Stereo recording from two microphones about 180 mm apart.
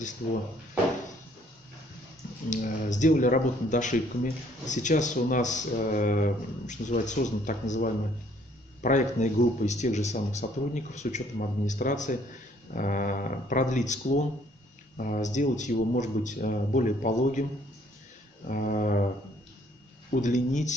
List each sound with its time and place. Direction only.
2.5 s speech: 45° left (ahead or behind)
18.5 s speech: 45° left (ahead or behind)
20.1 s speech: 40° left (ahead or behind)